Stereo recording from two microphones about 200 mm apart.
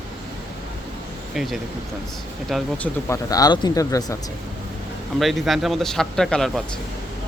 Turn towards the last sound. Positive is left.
turn(degrees=0)  # may be behind; listen again after turning